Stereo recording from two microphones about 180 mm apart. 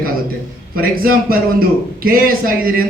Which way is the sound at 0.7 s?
55° right (ahead or behind).